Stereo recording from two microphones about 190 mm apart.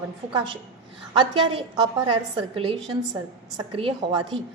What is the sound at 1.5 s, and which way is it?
A woman's voice, 25° right (ahead or behind).